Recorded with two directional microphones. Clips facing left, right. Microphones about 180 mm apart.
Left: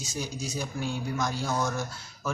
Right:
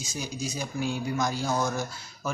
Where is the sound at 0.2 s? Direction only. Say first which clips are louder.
Even; centre (ahead or behind).